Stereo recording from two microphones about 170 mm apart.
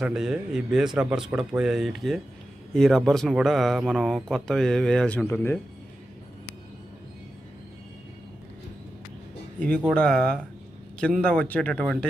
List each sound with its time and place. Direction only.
0.0 s speech: 5° right (ahead or behind); by 5.6 s 10° left (ahead or behind)
9.6 s speech: 5° left (ahead or behind)